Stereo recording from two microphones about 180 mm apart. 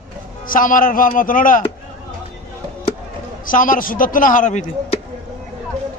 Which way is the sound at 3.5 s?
50° left (ahead or behind).